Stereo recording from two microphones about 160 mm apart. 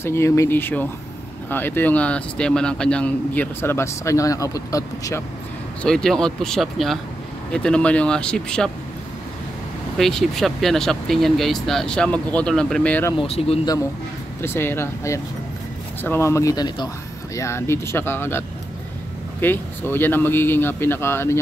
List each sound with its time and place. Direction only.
0.0 s speech: 15° left (ahead or behind)
5.8 s speech: 5° left (ahead or behind)
9.9 s speech: centre (ahead or behind)
13.2 s speech: 40° left (ahead or behind)
14.4 s speech: 15° left (ahead or behind)
19.4 s speech: 15° left (ahead or behind)